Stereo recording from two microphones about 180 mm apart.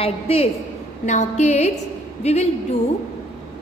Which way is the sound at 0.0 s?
30° left (ahead or behind).